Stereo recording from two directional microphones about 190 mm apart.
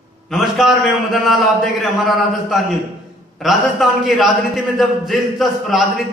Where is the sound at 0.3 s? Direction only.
Centre (ahead or behind).